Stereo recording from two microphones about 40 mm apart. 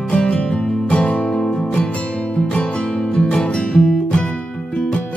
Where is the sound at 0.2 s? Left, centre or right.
Left.